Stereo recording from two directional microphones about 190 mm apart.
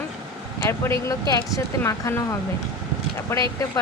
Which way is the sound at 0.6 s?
15° left (ahead or behind).